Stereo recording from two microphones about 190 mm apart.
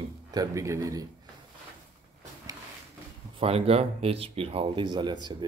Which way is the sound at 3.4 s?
30° right (ahead or behind).